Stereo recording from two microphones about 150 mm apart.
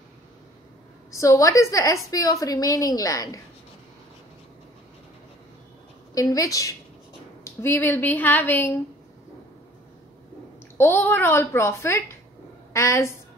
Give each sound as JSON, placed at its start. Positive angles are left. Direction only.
{"t": 1.1, "sound": "a woman's voice", "side_deg": 20}
{"t": 6.1, "sound": "a woman's voice", "side_deg": 20}
{"t": 10.8, "sound": "a woman's voice", "side_deg": 15}